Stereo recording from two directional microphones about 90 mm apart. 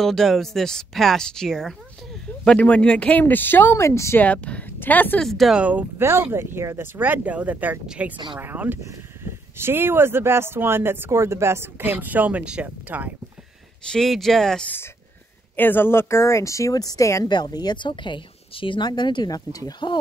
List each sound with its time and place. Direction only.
0.0 s speech: 5° left (ahead or behind); by 4.2 s 30° left (ahead or behind)
4.2 s speech: 15° left (ahead or behind)
5.2 s speech: centre (ahead or behind)
5.6 s speech: 15° right (ahead or behind)
6.3 s speech: 30° right (ahead or behind)
7.0 s speech: 20° right (ahead or behind)
8.4 s speech: 20° right (ahead or behind)
13.8 s speech: 5° left (ahead or behind)
15.5 s speech: 20° left (ahead or behind); by 17.3 s 40° left (ahead or behind)
17.3 s speech: 50° left (ahead or behind)
19.3 s speech: 45° left (ahead or behind)